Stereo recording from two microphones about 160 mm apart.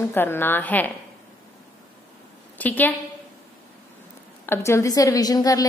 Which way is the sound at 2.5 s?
10° left (ahead or behind).